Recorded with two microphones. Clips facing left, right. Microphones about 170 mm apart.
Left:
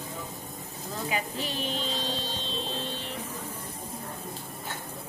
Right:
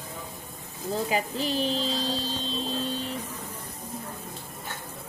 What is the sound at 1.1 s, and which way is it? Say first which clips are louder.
Speech: right 3 dB; 35° right (ahead or behind).